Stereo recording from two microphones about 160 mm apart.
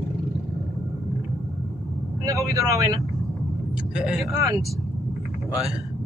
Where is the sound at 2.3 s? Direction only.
20° right (ahead or behind).